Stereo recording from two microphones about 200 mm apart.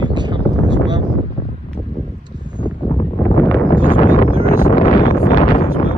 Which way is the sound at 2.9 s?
25° left (ahead or behind).